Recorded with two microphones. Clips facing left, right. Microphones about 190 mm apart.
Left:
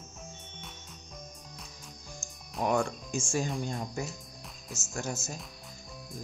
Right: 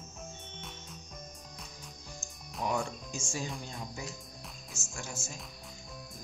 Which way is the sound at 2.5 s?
55° left (ahead or behind).